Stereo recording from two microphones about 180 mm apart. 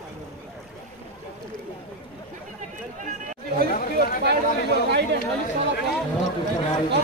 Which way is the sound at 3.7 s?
50° left (ahead or behind).